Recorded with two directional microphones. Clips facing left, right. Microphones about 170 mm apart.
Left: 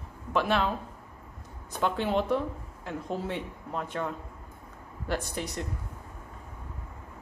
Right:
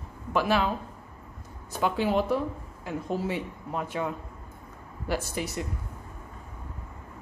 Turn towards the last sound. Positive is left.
turn(degrees=-5)  # may be behind; listen again after turning